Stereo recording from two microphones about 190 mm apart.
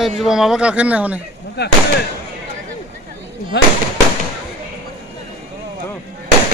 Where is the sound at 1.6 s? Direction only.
60° left (ahead or behind).